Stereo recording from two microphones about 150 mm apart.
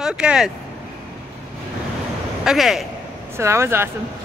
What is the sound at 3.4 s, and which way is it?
Speech, 15° right (ahead or behind).